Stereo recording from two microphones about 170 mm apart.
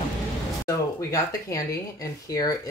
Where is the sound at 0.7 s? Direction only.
20° left (ahead or behind).